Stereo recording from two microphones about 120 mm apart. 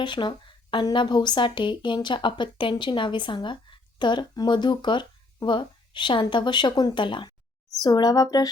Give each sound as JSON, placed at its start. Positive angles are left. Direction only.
{"t": 0.0, "sound": "speech", "side_deg": 40}